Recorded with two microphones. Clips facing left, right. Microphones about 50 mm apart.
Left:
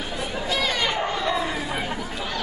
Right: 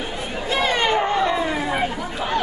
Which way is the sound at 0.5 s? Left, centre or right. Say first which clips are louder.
Right 6 dB; right.